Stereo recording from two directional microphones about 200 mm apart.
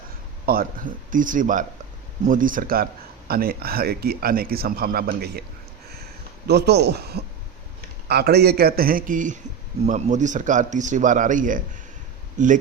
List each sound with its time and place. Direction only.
0.4 s speech: 45° right (ahead or behind)
6.5 s speech: 55° right (ahead or behind); by 12.5 s 40° right (ahead or behind)